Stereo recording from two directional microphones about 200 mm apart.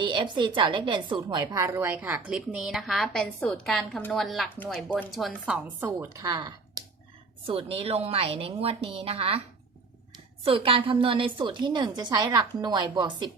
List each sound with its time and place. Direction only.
0.0 s a woman's voice: 25° right (ahead or behind)
10.4 s a woman's voice: 25° right (ahead or behind)